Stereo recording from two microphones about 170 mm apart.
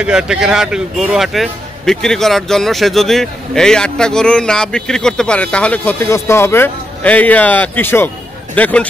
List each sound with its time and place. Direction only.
0.0 s a man's voice: 5° right (ahead or behind)